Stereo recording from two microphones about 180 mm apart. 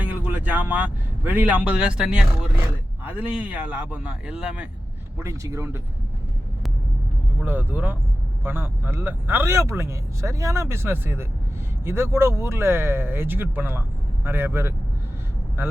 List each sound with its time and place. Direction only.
0.0 s a man's voice: 10° right (ahead or behind)
7.4 s speech: 10° right (ahead or behind)